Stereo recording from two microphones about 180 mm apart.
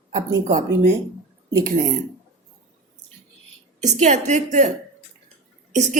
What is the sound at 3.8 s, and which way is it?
Speech, 40° right (ahead or behind).